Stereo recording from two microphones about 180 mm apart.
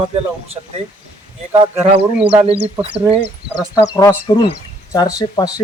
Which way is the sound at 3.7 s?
15° left (ahead or behind).